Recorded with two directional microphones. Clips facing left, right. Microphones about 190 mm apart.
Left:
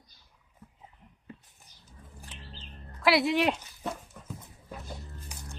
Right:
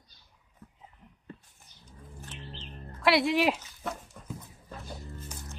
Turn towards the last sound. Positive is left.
turn(degrees=5)  # may be behind; listen again after turning